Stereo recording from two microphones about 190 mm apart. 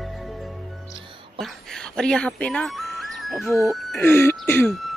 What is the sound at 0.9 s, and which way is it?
Music, 25° right (ahead or behind).